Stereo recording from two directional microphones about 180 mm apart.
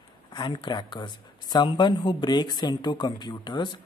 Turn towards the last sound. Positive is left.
turn(degrees=25)  # may be behind; listen again after turning